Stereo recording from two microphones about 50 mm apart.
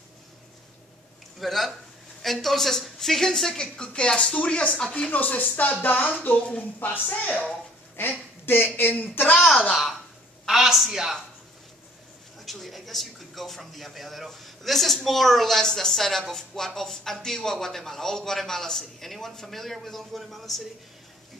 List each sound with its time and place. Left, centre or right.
1.4 s a woman's voice: centre; by 7.2 s left
7.2 s a woman's voice: left
8.6 s speech: left
9.7 s a man's voice: centre
12.4 s speech: centre